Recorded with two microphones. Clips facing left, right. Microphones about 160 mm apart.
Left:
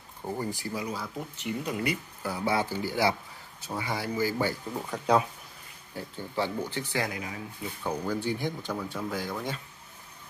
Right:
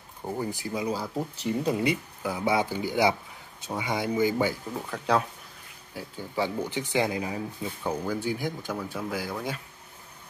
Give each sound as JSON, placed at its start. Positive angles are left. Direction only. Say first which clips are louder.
{"t": 0.2, "sound": "speech", "louder": "right 1 dB", "side_deg": -10}
{"t": 0.8, "sound": "speech", "louder": "right 5 dB", "side_deg": -30}
{"t": 5.0, "sound": "speech", "louder": "left 1 dB", "side_deg": 5}
{"t": 5.9, "sound": "speech", "louder": "right 1 dB", "side_deg": -10}
{"t": 7.8, "sound": "speech", "louder": "right 1 dB", "side_deg": -5}